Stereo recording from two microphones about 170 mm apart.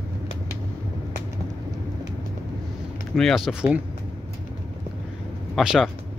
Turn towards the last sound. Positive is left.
turn(degrees=-5)  # may be behind; listen again after turning